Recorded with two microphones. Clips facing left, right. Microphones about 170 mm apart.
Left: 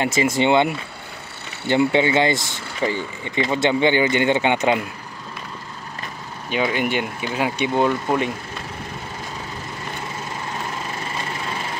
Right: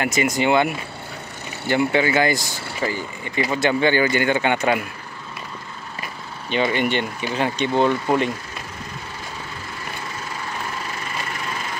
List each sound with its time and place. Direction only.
0.0 s speech: 25° left (ahead or behind)
6.5 s speech: 5° left (ahead or behind)